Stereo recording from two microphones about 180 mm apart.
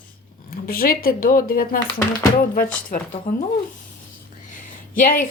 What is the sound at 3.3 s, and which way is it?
Speech, 45° left (ahead or behind).